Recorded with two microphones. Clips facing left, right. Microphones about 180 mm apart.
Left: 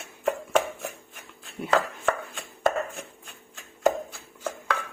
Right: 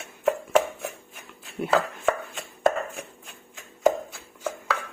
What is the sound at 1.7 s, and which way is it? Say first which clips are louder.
Chopping: right 1 dB; 5° right (ahead or behind).